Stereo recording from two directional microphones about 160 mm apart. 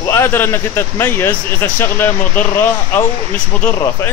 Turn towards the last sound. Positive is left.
turn(degrees=10)  # may be behind; listen again after turning